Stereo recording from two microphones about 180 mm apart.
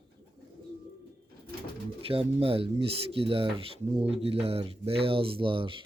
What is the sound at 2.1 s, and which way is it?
Speech, 30° right (ahead or behind).